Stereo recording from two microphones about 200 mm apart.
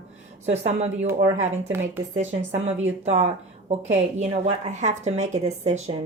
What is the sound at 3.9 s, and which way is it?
A woman's voice, 35° right (ahead or behind).